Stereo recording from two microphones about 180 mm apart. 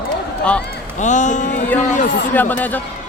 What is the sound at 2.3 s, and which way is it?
Speech, 10° left (ahead or behind).